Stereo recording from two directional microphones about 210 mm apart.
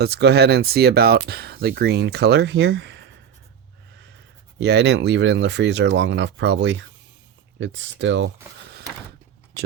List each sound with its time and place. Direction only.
0.0 s speech: 50° right (ahead or behind)
4.5 s speech: 55° right (ahead or behind)